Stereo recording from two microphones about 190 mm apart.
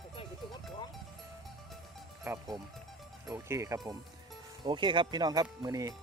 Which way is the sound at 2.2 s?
15° right (ahead or behind).